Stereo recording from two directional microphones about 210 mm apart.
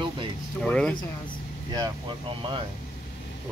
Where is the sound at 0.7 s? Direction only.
5° left (ahead or behind).